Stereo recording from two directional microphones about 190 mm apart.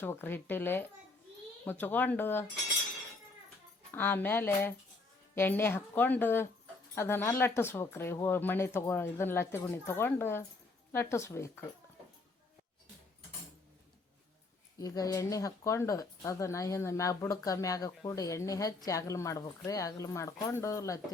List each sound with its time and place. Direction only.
0.0 s speech: 10° left (ahead or behind)
3.9 s speech: 10° left (ahead or behind)
14.8 s speech: 20° left (ahead or behind)